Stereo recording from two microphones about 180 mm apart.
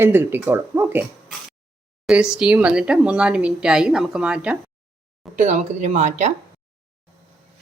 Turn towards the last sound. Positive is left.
turn(degrees=-40)  # may be behind; listen again after turning